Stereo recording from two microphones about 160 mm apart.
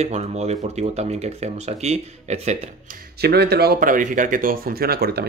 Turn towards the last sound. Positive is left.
turn(degrees=-75)  # may be behind; listen again after turning